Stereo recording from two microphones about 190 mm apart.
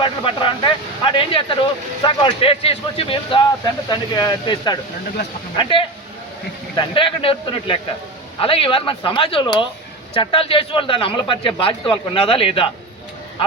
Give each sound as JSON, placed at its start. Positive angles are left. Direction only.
{"t": 0.0, "sound": "a man's voice", "side_deg": 25}